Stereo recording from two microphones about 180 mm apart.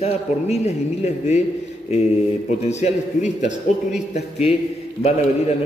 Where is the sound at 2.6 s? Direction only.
40° left (ahead or behind).